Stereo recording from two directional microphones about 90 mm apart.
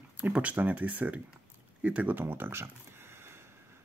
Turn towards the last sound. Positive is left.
turn(degrees=-25)  # may be behind; listen again after turning